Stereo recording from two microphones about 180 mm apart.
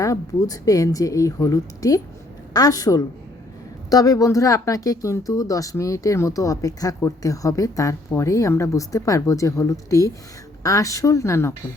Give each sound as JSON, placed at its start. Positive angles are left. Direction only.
{"t": 0.0, "sound": "speech", "side_deg": 20}